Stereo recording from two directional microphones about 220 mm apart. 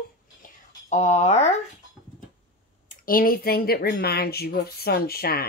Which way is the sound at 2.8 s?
40° left (ahead or behind).